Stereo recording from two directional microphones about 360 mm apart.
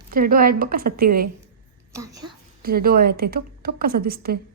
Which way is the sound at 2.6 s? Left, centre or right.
Right.